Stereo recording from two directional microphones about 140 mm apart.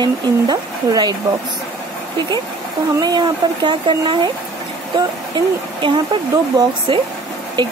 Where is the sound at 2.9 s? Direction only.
30° right (ahead or behind).